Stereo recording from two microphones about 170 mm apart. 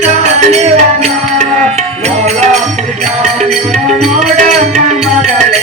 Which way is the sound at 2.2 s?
40° right (ahead or behind).